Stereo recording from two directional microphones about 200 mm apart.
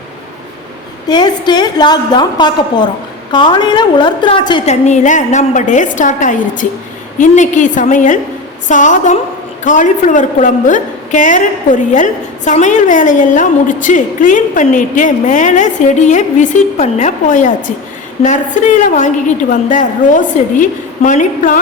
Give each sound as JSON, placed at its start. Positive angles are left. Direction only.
{"t": 1.0, "sound": "a woman's voice", "side_deg": 20}
{"t": 4.7, "sound": "a woman's voice", "side_deg": 35}
{"t": 18.9, "sound": "a woman's voice", "side_deg": 40}